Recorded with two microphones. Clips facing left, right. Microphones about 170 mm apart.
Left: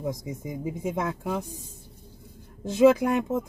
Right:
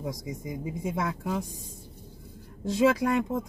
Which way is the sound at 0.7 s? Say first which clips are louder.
Left 2 dB; 20° left (ahead or behind).